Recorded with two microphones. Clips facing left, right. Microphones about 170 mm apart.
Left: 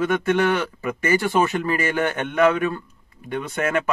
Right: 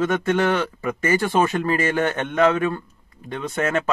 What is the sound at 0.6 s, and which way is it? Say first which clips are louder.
Speech: right 1 dB; 30° right (ahead or behind).